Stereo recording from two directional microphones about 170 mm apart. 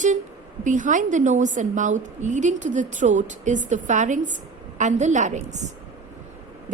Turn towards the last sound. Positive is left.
turn(degrees=-45)  # may be behind; listen again after turning